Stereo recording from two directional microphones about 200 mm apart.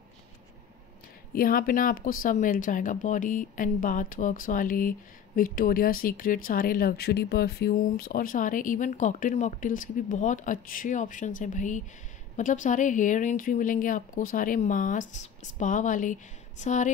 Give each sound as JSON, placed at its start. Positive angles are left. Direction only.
{"t": 1.3, "sound": "speech", "side_deg": 45}